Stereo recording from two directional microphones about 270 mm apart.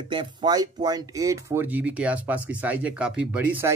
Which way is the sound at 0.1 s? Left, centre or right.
Centre.